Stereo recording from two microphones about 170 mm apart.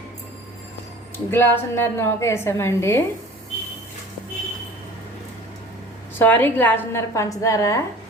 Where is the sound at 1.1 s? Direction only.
10° left (ahead or behind).